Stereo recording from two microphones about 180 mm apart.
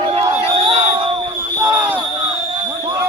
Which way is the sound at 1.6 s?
10° right (ahead or behind).